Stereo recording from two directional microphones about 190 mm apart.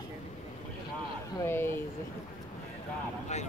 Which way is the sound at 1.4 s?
10° left (ahead or behind).